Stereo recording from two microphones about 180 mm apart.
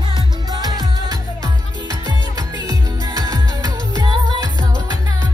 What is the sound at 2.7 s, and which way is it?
Music, 20° right (ahead or behind).